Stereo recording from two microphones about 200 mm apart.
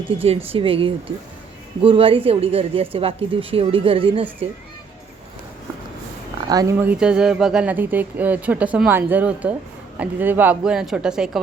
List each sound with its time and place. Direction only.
0.2 s a woman's voice: 30° right (ahead or behind)
6.5 s a woman's voice: 15° right (ahead or behind)